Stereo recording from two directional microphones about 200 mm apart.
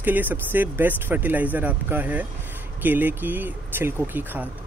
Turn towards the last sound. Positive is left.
turn(degrees=-10)  # may be behind; listen again after turning